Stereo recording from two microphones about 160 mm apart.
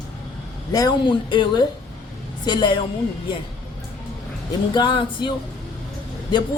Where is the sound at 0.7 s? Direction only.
25° left (ahead or behind).